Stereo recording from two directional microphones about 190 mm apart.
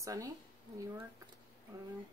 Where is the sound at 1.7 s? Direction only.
15° right (ahead or behind).